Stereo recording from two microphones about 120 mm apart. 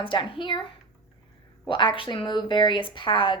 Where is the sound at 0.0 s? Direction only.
45° left (ahead or behind).